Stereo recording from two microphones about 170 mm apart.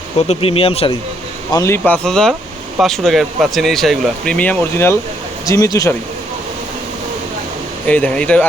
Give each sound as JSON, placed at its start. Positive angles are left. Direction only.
{"t": 0.3, "sound": "speech", "side_deg": 35}
{"t": 1.5, "sound": "speech", "side_deg": 15}
{"t": 7.9, "sound": "speech", "side_deg": 10}